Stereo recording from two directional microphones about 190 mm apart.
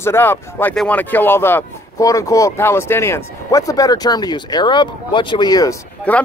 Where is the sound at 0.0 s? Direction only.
10° left (ahead or behind).